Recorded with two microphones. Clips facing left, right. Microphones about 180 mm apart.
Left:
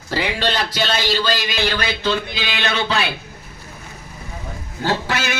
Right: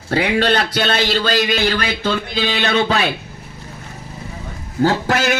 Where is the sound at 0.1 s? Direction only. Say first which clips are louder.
Right 5 dB; 55° right (ahead or behind).